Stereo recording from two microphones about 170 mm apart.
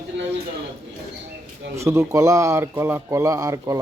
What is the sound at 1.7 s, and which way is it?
Speech, 15° right (ahead or behind).